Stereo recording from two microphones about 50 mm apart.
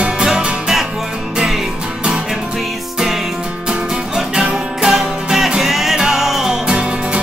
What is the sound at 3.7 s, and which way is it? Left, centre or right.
Music, centre.